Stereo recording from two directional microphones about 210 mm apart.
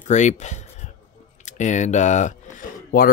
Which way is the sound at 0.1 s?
35° left (ahead or behind).